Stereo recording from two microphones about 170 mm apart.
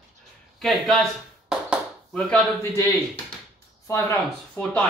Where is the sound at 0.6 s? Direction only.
Centre (ahead or behind).